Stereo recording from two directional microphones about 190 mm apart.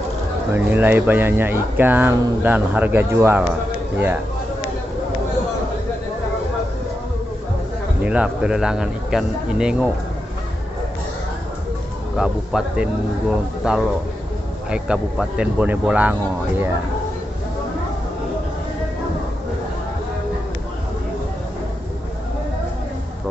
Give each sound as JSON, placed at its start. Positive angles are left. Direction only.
{"t": 0.6, "sound": "speech", "side_deg": -10}
{"t": 8.0, "sound": "speech", "side_deg": -5}
{"t": 12.2, "sound": "speech", "side_deg": -5}